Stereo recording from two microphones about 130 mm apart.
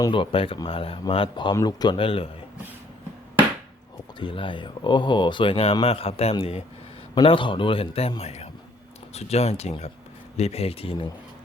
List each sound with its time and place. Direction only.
0.1 s speech: 45° left (ahead or behind)
2.0 s speech: 45° left (ahead or behind)
4.2 s speech: 40° left (ahead or behind)
7.2 s speech: 40° left (ahead or behind)